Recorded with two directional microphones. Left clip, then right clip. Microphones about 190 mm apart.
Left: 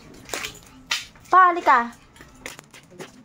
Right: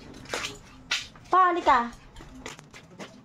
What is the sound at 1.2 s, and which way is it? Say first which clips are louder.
Speech: left 5 dB; 10° left (ahead or behind).